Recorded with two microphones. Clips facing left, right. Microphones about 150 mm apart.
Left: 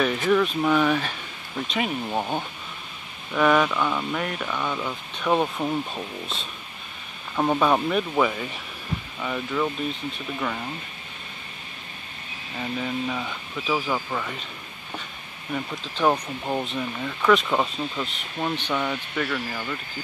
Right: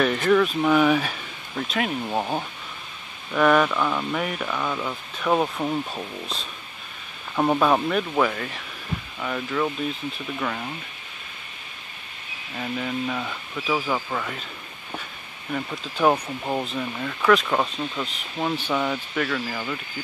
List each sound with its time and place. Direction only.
0.0 s speech: 5° left (ahead or behind)
12.5 s speech: centre (ahead or behind)
15.5 s speech: 5° right (ahead or behind)